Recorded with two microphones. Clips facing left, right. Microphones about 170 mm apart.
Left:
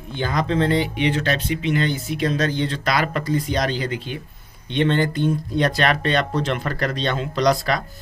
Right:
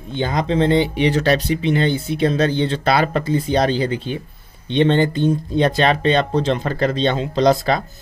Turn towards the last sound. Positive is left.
turn(degrees=-25)  # may be behind; listen again after turning